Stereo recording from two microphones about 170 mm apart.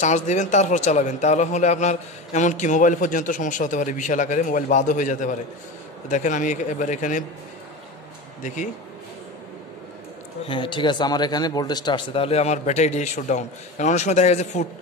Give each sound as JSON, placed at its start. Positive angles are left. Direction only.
{"t": 0.0, "sound": "a man's voice", "side_deg": 45}
{"t": 8.4, "sound": "speech", "side_deg": 45}
{"t": 10.4, "sound": "speech", "side_deg": 30}